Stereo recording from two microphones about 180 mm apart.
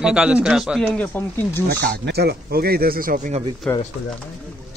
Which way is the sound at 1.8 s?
60° right (ahead or behind).